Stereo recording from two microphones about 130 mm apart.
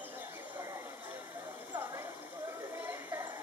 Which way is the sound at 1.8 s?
20° right (ahead or behind).